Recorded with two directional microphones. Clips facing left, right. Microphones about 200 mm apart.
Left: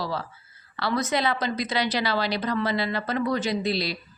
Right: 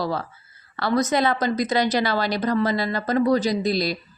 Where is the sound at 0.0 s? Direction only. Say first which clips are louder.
Right 4 dB; 50° right (ahead or behind).